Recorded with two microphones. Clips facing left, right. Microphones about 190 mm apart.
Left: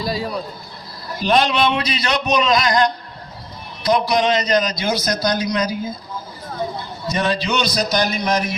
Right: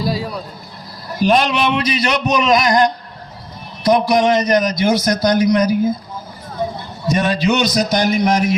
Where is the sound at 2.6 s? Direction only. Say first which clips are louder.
Right 3 dB; 45° right (ahead or behind).